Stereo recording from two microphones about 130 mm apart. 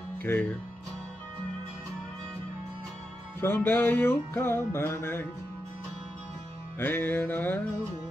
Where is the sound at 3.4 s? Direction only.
15° left (ahead or behind).